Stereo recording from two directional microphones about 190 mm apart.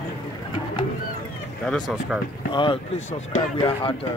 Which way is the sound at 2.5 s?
25° left (ahead or behind).